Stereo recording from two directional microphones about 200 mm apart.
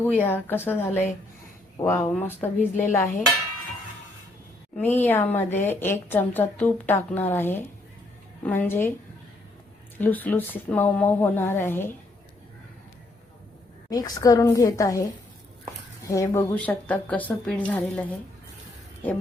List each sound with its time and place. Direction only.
0.2 s a woman's voice: 10° left (ahead or behind)
4.8 s a woman's voice: 10° left (ahead or behind)
10.0 s a woman's voice: 10° left (ahead or behind)
13.9 s a woman's voice: 20° left (ahead or behind)
16.0 s a woman's voice: 15° left (ahead or behind)